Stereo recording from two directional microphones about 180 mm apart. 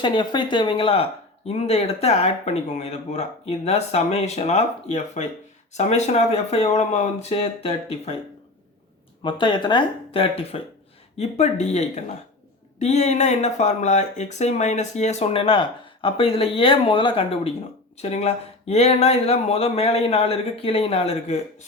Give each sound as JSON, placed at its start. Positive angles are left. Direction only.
{"t": 0.0, "sound": "speech", "side_deg": 25}
{"t": 9.2, "sound": "speech", "side_deg": 25}